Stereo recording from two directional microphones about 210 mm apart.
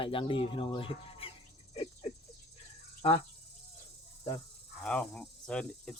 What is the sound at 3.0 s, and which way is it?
Cricket, 25° left (ahead or behind).